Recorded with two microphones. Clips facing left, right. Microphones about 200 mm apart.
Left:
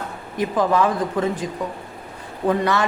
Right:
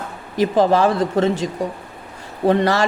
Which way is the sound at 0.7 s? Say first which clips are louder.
Right 3 dB; 80° right.